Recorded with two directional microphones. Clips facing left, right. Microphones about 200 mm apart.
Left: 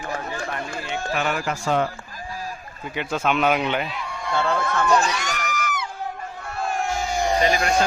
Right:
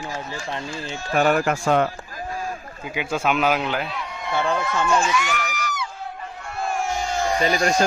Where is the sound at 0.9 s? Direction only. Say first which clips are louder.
Right 6 dB; 45° right (ahead or behind).